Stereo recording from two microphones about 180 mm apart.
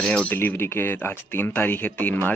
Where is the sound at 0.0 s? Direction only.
5° left (ahead or behind).